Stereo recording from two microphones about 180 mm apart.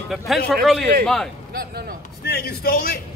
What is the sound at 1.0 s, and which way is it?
Speech, 5° left (ahead or behind).